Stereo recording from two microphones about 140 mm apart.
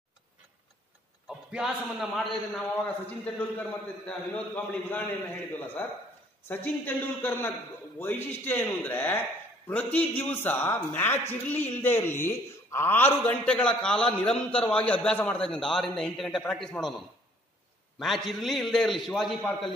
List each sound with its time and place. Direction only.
1.5 s a man's voice: centre (ahead or behind)
3.3 s a man's voice: 10° left (ahead or behind)